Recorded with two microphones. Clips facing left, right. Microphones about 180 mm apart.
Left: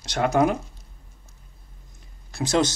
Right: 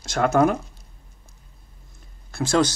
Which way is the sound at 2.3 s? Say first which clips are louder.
Right 2 dB; 20° left (ahead or behind).